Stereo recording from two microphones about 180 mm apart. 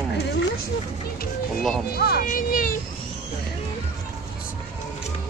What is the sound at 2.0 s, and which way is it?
Speech, 55° left (ahead or behind).